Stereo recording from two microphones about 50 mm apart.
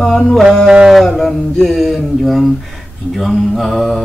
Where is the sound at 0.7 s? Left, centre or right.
Centre.